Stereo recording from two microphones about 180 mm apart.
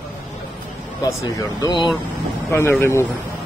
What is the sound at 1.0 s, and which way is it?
Speech, 20° left (ahead or behind).